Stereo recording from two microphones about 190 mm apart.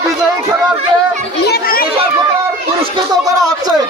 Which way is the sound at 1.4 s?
55° left (ahead or behind).